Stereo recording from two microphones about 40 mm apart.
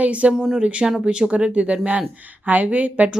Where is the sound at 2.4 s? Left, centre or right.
Right.